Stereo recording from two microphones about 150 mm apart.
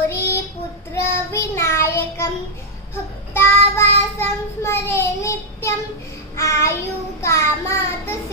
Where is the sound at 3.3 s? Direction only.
15° left (ahead or behind).